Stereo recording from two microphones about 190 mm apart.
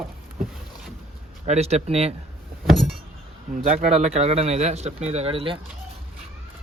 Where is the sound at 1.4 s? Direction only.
35° right (ahead or behind).